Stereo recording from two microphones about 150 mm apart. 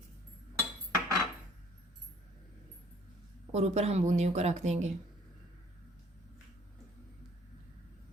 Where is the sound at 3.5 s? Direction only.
45° right (ahead or behind).